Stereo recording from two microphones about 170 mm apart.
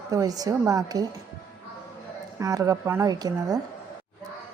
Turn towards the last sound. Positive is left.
turn(degrees=-20)  # may be behind; listen again after turning